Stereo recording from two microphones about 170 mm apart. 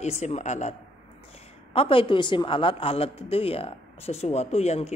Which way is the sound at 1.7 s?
35° left (ahead or behind).